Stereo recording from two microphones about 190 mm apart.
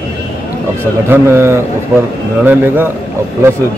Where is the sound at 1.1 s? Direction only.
15° right (ahead or behind).